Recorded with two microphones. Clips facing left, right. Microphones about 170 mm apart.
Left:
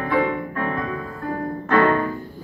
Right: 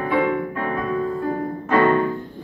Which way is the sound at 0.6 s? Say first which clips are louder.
Right 1 dB; 10° right (ahead or behind).